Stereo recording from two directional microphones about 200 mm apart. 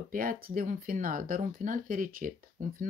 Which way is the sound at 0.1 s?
45° right (ahead or behind).